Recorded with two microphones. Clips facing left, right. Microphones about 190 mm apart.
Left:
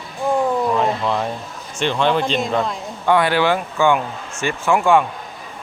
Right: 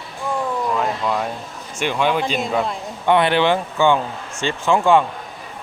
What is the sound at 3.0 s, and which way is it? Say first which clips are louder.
Speech: even; 20° right (ahead or behind).